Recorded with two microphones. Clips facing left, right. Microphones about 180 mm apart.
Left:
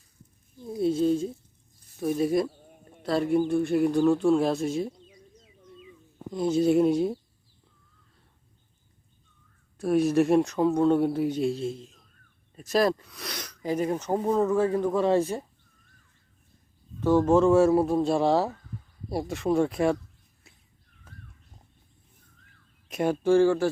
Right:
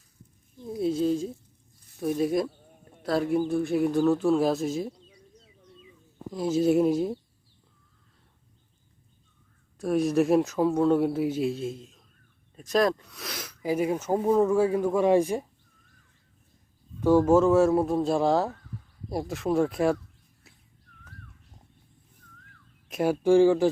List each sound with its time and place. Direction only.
0.8 s a man's voice: centre (ahead or behind)
4.9 s bird: 10° left (ahead or behind)
6.3 s a man's voice: centre (ahead or behind)
9.7 s a man's voice: centre (ahead or behind)
17.0 s a man's voice: 10° right (ahead or behind)
22.9 s a sound: centre (ahead or behind)
23.2 s speech: 15° right (ahead or behind)